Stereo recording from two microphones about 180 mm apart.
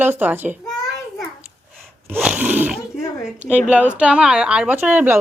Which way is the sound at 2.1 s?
10° right (ahead or behind).